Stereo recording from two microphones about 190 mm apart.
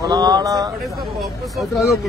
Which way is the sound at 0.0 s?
20° right (ahead or behind).